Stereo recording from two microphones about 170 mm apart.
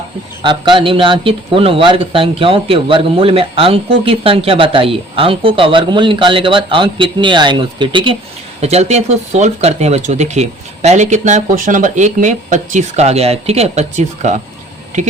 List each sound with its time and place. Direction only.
0.4 s speech: 30° right (ahead or behind)
8.6 s speech: 40° right (ahead or behind)